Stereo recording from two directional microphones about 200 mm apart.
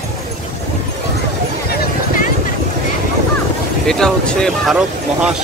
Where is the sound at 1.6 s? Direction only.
45° left (ahead or behind).